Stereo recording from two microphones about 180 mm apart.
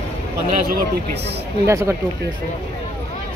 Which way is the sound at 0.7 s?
65° right (ahead or behind).